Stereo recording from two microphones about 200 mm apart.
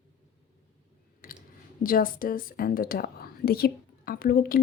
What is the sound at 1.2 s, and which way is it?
Clicking, 45° left (ahead or behind).